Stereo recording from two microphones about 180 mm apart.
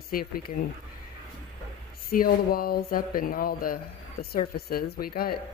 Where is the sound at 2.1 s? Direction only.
55° left (ahead or behind).